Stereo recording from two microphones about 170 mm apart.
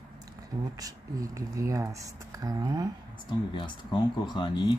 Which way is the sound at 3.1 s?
25° left (ahead or behind).